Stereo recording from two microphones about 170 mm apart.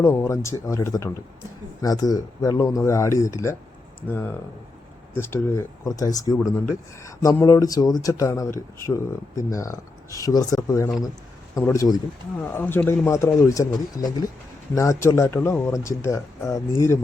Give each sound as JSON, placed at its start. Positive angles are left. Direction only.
{"t": 0.0, "sound": "speech", "side_deg": 15}